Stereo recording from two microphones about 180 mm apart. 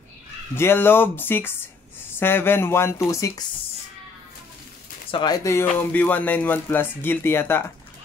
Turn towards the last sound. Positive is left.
turn(degrees=10)  # may be behind; listen again after turning